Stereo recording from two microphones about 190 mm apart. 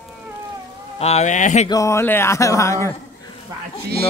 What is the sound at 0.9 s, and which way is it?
Speech, 35° left (ahead or behind).